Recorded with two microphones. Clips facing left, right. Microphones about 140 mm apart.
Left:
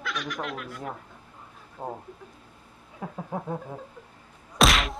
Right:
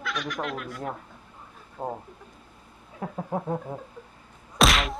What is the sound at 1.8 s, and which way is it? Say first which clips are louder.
Speech: right 3 dB; 20° right (ahead or behind).